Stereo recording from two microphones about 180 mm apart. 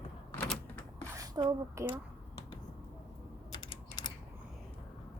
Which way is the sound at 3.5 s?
25° left (ahead or behind).